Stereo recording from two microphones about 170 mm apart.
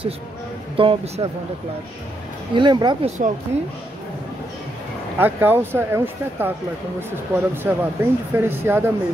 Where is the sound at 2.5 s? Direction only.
25° right (ahead or behind).